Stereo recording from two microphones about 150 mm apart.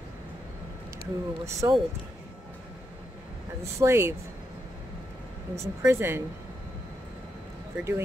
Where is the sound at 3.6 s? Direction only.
20° right (ahead or behind).